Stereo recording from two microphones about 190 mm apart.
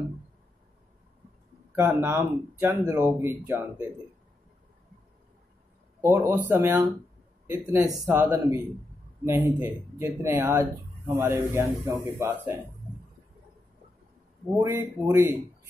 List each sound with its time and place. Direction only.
1.8 s speech: 15° right (ahead or behind)
5.9 s speech: 15° right (ahead or behind)
9.6 s speech: 15° right (ahead or behind)
14.6 s speech: 15° right (ahead or behind)